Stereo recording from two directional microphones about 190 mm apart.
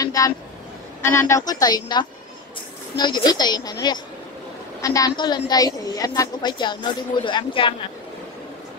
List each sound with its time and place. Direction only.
0.0 s vehicle: 20° left (ahead or behind)
1.0 s a woman's voice: 15° left (ahead or behind)
4.8 s a woman's voice: 20° left (ahead or behind)